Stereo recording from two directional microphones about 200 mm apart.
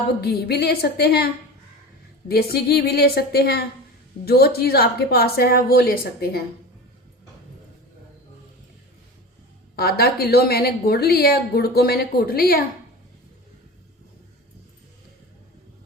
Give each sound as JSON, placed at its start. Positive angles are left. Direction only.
{"t": 0.2, "sound": "a woman's voice", "side_deg": 50}
{"t": 9.7, "sound": "a woman's voice", "side_deg": 50}